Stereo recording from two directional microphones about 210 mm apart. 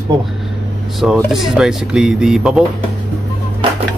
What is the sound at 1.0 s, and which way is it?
Speech, centre (ahead or behind).